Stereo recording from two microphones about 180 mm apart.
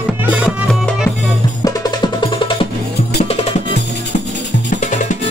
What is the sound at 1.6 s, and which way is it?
Music, 25° left (ahead or behind).